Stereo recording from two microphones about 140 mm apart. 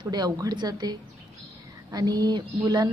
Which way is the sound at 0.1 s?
30° right (ahead or behind).